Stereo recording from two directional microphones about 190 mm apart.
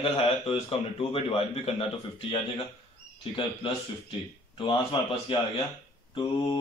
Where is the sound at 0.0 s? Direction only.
30° left (ahead or behind).